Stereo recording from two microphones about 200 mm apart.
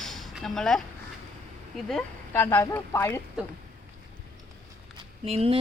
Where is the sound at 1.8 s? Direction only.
5° left (ahead or behind).